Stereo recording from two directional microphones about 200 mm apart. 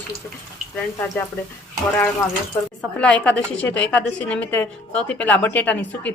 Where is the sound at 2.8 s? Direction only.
5° left (ahead or behind).